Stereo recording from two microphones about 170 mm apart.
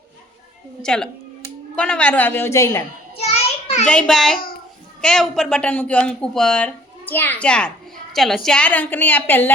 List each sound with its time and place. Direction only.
0.8 s a woman's voice: 5° left (ahead or behind)
3.2 s a sound: 40° left (ahead or behind)
3.8 s a woman's voice: 5° left (ahead or behind)